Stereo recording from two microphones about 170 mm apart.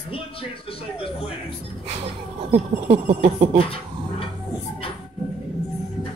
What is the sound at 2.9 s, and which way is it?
Speech, 35° right (ahead or behind).